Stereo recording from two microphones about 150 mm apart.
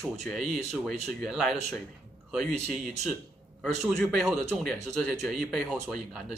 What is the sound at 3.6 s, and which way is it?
A man's voice, centre (ahead or behind).